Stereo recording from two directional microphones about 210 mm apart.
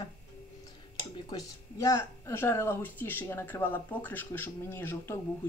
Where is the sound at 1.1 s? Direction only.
15° left (ahead or behind).